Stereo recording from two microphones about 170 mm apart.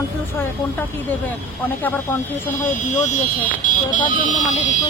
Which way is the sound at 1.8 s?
10° left (ahead or behind).